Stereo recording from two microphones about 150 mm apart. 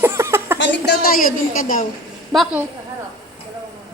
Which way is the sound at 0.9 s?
65° left (ahead or behind).